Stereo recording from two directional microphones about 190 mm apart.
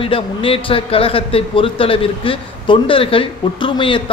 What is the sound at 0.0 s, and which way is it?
A man's voice, 30° left (ahead or behind).